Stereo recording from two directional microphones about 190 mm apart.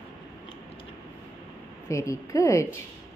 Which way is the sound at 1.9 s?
15° left (ahead or behind).